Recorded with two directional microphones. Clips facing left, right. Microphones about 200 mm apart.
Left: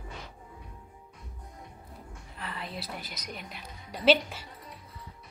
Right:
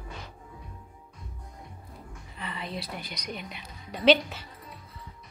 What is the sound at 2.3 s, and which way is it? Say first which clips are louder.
A woman's voice: right 3 dB; centre (ahead or behind).